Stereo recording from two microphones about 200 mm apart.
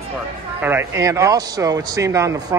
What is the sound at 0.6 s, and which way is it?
Speech, 10° right (ahead or behind).